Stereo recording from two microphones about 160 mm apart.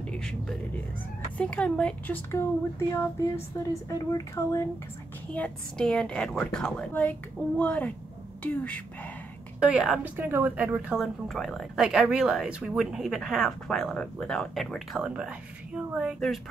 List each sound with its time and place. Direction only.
0.0 s a woman's voice: 5° left (ahead or behind)
2.3 s a woman's voice: 15° left (ahead or behind)
5.3 s a woman's voice: 5° left (ahead or behind)
9.6 s a woman's voice: 5° right (ahead or behind)